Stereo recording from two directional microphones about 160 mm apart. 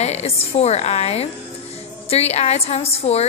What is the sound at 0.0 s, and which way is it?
A woman's voice, 40° left (ahead or behind).